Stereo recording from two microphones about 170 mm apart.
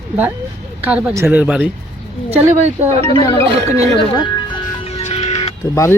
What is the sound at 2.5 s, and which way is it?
Speech, 40° right (ahead or behind).